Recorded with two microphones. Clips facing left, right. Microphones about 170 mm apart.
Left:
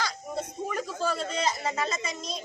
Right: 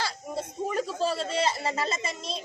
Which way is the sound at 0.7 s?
30° right (ahead or behind).